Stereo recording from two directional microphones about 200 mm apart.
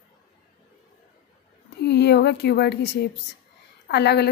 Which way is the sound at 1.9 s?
55° left (ahead or behind).